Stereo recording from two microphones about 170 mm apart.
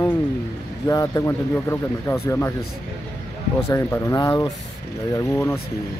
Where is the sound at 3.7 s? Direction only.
15° left (ahead or behind).